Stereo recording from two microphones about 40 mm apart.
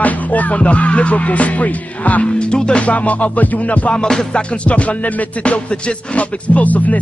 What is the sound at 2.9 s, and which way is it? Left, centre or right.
Music, left.